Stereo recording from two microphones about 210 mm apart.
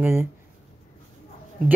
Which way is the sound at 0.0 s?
10° right (ahead or behind).